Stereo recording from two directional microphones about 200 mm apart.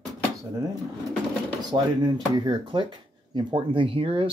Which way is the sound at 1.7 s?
20° right (ahead or behind).